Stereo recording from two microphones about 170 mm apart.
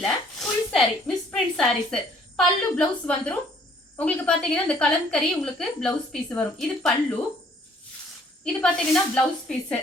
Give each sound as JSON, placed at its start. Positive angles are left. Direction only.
{"t": 0.0, "sound": "a sound", "side_deg": 0}
{"t": 1.5, "sound": "a woman's voice", "side_deg": 5}
{"t": 8.4, "sound": "a woman's voice", "side_deg": 5}